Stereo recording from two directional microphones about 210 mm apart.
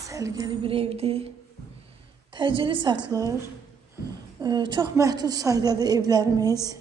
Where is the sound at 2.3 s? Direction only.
25° right (ahead or behind).